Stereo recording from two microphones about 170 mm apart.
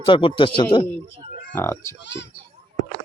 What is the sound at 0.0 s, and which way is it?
Speech, 30° left (ahead or behind).